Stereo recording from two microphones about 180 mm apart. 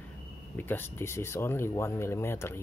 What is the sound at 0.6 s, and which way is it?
Speech, 10° left (ahead or behind).